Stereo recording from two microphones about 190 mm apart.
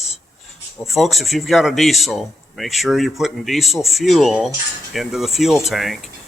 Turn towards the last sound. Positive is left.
turn(degrees=0)  # may be behind; listen again after turning